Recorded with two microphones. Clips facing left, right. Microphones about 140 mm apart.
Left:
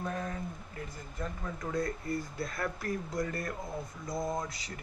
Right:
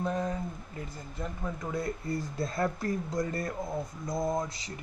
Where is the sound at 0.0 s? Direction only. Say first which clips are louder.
Right 5 dB; 20° right (ahead or behind).